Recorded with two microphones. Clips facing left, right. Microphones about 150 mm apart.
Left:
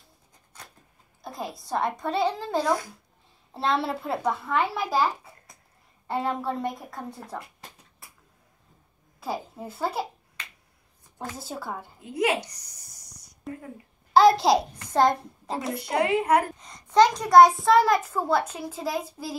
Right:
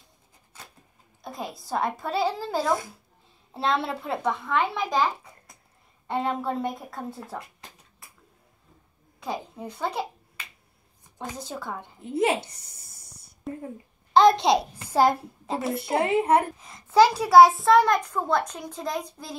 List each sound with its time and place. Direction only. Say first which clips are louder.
1.2 s a child's voice: even; centre (ahead or behind)
9.2 s a woman's voice: even; 5° left (ahead or behind)
11.3 s a child's voice: even; 5° left (ahead or behind)
12.1 s a sound: right 1 dB; 30° right (ahead or behind)
14.1 s a child's voice: even; 5° left (ahead or behind)
16.2 s a woman's voice: right 3 dB; 25° right (ahead or behind)
16.5 s a child's voice: right 1 dB; 5° right (ahead or behind)